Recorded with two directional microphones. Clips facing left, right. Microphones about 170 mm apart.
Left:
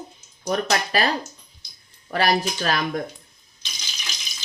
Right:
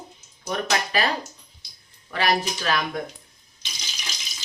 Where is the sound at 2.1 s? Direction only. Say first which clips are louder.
Left 2 dB; 40° left (ahead or behind).